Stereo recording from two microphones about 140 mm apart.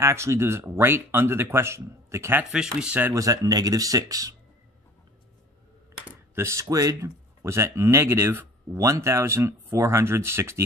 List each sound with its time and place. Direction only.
0.0 s speech: 20° right (ahead or behind)
2.5 s speech: 5° right (ahead or behind); by 4.4 s 25° right (ahead or behind)
6.0 s speech: 20° right (ahead or behind)